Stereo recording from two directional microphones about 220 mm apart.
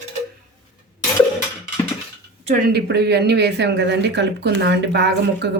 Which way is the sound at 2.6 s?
50° right (ahead or behind).